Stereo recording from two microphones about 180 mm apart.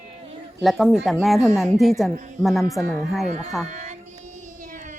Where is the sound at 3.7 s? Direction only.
40° right (ahead or behind).